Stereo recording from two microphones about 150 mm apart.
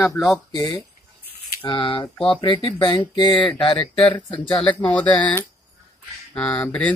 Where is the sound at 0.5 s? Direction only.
30° left (ahead or behind).